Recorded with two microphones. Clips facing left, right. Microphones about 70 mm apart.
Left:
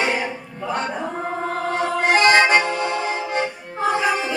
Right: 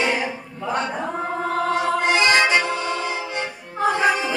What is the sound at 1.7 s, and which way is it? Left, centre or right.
Accordion, left.